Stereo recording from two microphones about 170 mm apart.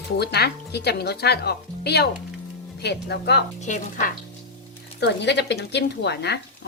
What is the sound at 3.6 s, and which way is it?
Speech, 50° left (ahead or behind).